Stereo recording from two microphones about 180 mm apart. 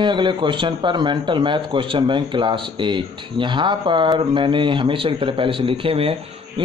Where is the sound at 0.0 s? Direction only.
25° right (ahead or behind).